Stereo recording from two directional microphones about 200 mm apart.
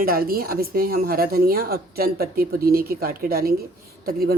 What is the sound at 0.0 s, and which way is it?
A woman's voice, 45° right (ahead or behind).